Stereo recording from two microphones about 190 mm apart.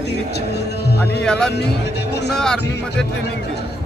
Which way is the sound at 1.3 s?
5° left (ahead or behind).